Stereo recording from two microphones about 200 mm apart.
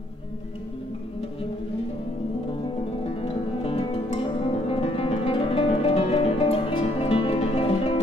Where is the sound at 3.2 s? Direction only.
30° left (ahead or behind).